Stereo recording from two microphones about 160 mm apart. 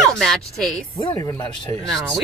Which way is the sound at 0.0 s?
Centre (ahead or behind).